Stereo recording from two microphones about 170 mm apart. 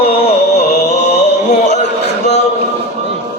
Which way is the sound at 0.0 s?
35° left (ahead or behind).